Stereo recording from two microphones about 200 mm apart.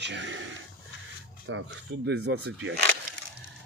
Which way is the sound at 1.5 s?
70° right (ahead or behind).